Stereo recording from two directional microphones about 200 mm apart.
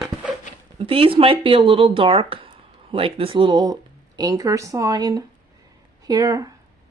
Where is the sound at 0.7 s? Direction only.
30° right (ahead or behind).